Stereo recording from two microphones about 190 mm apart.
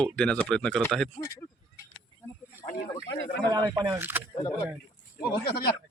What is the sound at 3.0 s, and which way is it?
Speech, 75° left (ahead or behind).